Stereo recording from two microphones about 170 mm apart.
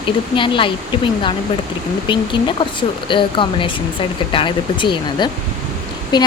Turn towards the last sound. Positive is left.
turn(degrees=25)  # may be behind; listen again after turning